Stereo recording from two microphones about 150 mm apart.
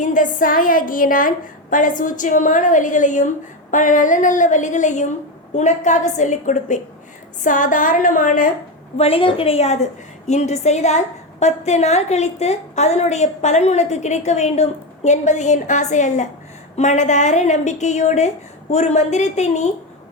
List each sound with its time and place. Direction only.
0.0 s a woman's voice: 60° left (ahead or behind)
9.0 s a woman's voice: 40° left (ahead or behind)